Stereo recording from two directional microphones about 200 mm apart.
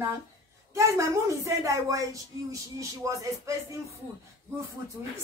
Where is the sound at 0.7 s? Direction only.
15° right (ahead or behind).